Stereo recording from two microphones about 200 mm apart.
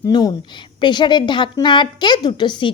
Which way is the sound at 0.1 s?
20° left (ahead or behind).